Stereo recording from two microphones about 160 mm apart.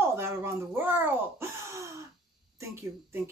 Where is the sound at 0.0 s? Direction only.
15° right (ahead or behind).